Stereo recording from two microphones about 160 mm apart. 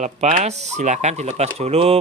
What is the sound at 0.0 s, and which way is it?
Speech, 45° right (ahead or behind).